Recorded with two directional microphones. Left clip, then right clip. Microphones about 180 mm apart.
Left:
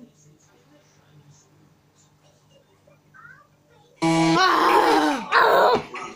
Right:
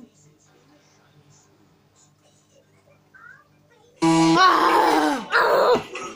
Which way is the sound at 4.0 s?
15° left (ahead or behind).